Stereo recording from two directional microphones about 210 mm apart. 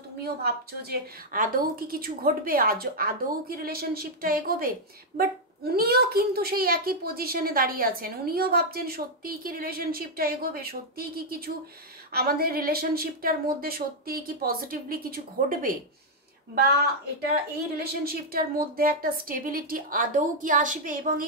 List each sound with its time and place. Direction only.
0.2 s a child's voice: 50° right (ahead or behind)
18.0 s a woman's voice: 45° right (ahead or behind)